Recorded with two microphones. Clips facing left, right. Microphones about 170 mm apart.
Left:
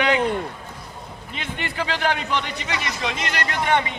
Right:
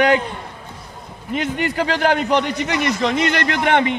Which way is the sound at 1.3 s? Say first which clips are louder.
Right 10 dB; 45° right (ahead or behind).